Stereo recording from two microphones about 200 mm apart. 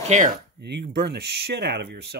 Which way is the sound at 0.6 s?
55° right (ahead or behind).